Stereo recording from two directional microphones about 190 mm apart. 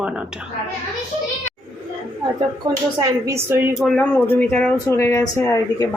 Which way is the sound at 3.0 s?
15° right (ahead or behind).